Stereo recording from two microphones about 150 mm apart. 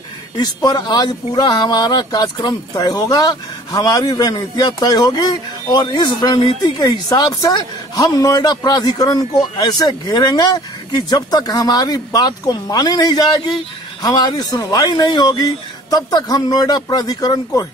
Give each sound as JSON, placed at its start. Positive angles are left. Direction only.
{"t": 0.4, "sound": "speech", "side_deg": 25}